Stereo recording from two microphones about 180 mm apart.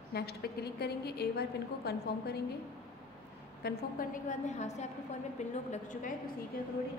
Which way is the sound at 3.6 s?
55° left (ahead or behind).